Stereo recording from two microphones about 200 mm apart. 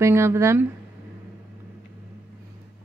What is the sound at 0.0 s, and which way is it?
Speech, 15° right (ahead or behind).